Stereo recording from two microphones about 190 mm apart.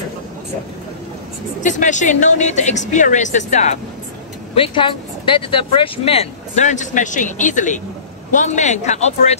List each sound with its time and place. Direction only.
1.6 s speech: 40° left (ahead or behind)
4.6 s speech: 25° left (ahead or behind)